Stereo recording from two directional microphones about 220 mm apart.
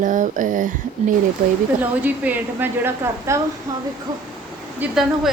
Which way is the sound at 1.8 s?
10° right (ahead or behind).